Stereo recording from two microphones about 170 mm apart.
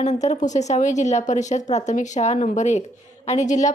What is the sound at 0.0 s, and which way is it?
A woman's voice, 45° left (ahead or behind).